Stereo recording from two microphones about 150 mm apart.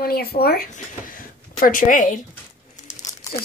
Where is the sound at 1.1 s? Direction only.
65° left (ahead or behind).